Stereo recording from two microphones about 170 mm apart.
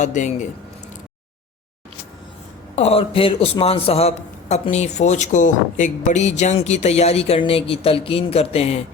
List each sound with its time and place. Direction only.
0.0 s speech: 45° left (ahead or behind)
2.7 s a man's voice: 35° left (ahead or behind)